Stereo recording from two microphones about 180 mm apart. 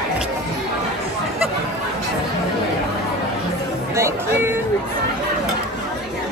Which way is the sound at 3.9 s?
15° right (ahead or behind).